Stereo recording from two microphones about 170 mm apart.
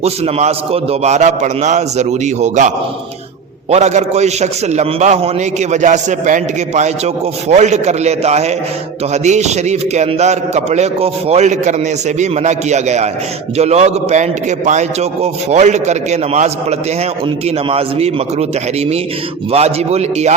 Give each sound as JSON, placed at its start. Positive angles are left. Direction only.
{"t": 0.0, "sound": "a man's voice", "side_deg": -40}
{"t": 19.5, "sound": "a man's voice", "side_deg": -40}